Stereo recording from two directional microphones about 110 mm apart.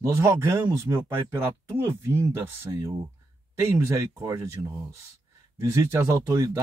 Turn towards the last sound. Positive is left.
turn(degrees=-30)  # may be behind; listen again after turning